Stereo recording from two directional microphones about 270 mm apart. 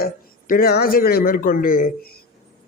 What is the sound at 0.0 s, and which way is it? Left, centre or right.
Speech, left.